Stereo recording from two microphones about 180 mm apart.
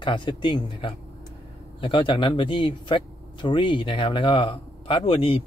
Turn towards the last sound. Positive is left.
turn(degrees=30)  # may be behind; listen again after turning